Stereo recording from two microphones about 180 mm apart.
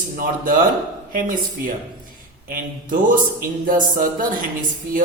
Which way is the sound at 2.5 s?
50° right (ahead or behind).